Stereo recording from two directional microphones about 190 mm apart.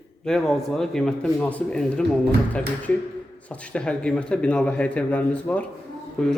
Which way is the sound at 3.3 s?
5° left (ahead or behind).